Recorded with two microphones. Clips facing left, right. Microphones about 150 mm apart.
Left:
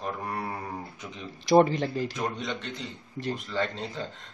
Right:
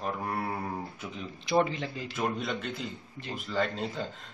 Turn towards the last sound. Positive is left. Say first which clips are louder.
# even
turn(degrees=-5)  # may be behind; listen again after turning